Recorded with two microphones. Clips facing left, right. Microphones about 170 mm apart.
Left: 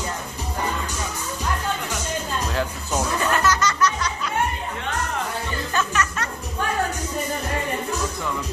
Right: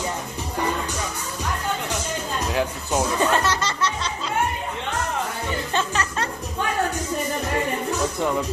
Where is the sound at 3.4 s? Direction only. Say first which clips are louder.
Left 3 dB; 30° right (ahead or behind).